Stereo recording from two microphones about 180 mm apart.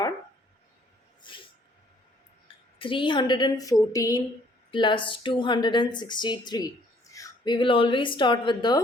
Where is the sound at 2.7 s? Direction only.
30° left (ahead or behind).